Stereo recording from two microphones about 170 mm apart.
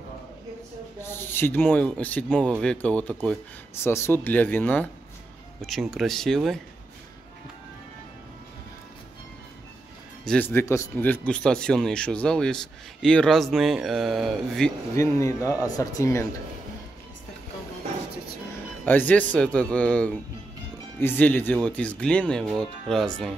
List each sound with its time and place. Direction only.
1.0 s speech: 15° left (ahead or behind)
10.2 s speech: 10° left (ahead or behind)
15.0 s speech: 20° left (ahead or behind)
18.9 s speech: 10° left (ahead or behind)